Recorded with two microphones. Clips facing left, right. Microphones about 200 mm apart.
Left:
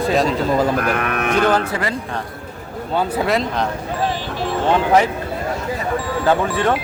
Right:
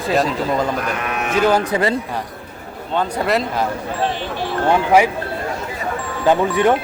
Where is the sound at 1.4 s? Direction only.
10° right (ahead or behind).